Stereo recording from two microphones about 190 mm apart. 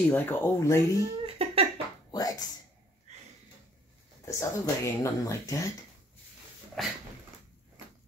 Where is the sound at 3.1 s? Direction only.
35° right (ahead or behind).